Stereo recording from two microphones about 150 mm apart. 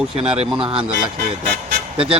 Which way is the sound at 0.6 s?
40° right (ahead or behind).